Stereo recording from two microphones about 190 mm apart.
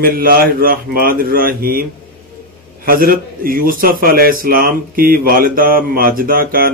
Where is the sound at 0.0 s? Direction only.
50° right (ahead or behind).